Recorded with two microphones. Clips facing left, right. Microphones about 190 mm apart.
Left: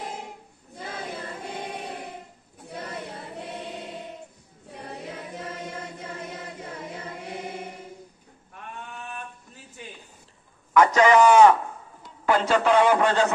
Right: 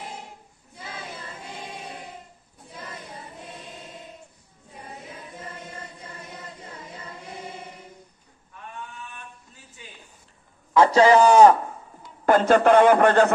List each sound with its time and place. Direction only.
0.7 s choir: 60° left (ahead or behind)
4.8 s choir: 75° left (ahead or behind)
10.7 s a man's voice: 30° right (ahead or behind)
12.3 s a man's voice: 50° right (ahead or behind)